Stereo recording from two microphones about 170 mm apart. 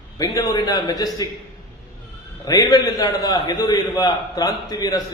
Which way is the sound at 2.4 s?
20° left (ahead or behind).